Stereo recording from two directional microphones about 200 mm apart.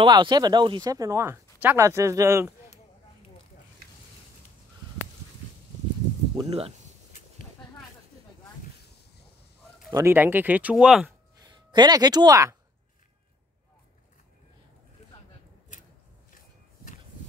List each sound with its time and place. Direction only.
0.0 s speech: 20° right (ahead or behind)
6.3 s speech: 30° right (ahead or behind)
9.9 s speech: 10° right (ahead or behind)
11.4 s speech: 20° right (ahead or behind)
16.3 s walk: 40° left (ahead or behind)